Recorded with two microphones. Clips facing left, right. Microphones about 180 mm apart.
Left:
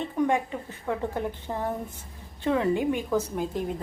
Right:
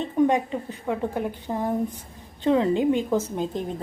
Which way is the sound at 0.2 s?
20° right (ahead or behind).